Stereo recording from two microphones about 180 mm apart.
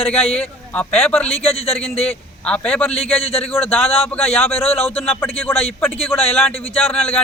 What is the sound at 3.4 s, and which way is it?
Speech, 10° left (ahead or behind).